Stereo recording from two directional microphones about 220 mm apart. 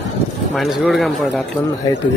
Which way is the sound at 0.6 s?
Centre (ahead or behind).